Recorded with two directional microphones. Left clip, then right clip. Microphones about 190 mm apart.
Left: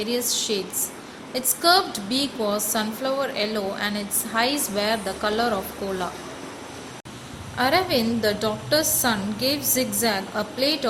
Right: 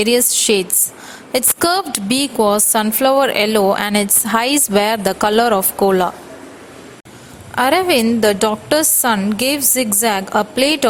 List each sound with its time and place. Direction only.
0.0 s a woman's voice: 55° right (ahead or behind)
7.5 s a woman's voice: 50° right (ahead or behind)